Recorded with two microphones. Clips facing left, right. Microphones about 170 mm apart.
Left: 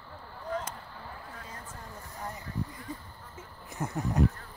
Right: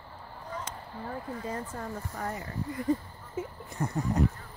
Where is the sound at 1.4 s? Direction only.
70° right (ahead or behind).